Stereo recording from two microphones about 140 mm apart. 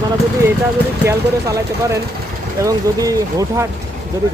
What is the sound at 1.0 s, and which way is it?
Speech, 25° right (ahead or behind).